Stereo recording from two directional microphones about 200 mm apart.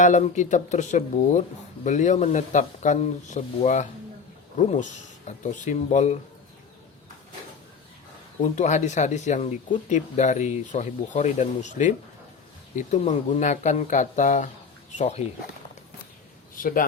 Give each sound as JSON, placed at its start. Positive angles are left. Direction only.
{"t": 0.0, "sound": "speech", "side_deg": 40}
{"t": 8.4, "sound": "speech", "side_deg": 35}
{"t": 16.6, "sound": "a man's voice", "side_deg": 45}